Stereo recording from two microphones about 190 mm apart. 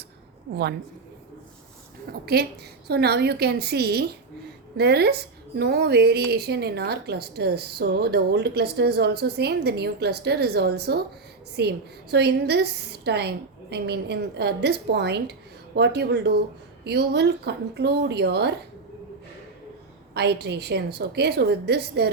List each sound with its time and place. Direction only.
2.2 s a woman's voice: 60° right (ahead or behind)
20.1 s a woman's voice: 60° right (ahead or behind)